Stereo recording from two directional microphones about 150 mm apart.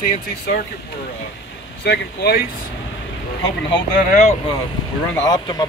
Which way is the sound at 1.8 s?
90° left.